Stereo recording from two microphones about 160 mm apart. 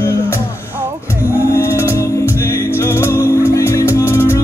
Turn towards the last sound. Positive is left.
turn(degrees=15)  # may be behind; listen again after turning